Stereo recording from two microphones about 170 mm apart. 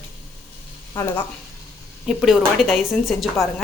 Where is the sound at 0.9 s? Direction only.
10° left (ahead or behind).